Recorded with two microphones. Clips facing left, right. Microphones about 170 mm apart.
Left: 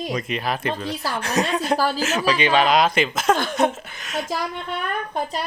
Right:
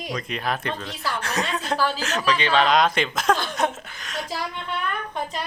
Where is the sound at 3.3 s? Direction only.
50° left (ahead or behind).